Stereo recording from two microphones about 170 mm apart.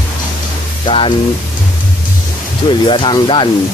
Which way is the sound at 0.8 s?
30° left (ahead or behind).